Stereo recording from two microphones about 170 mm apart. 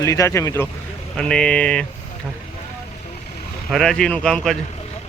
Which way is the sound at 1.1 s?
5° left (ahead or behind).